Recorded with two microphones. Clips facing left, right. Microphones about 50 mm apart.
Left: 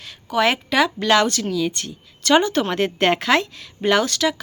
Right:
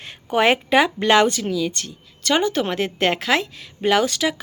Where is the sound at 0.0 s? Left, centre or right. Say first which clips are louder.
Right 1 dB; right.